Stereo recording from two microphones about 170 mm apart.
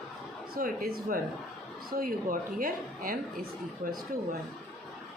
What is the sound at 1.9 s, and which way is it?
Speech, 55° right (ahead or behind).